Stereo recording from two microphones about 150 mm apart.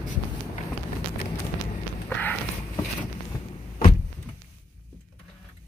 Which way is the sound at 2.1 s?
10° left (ahead or behind).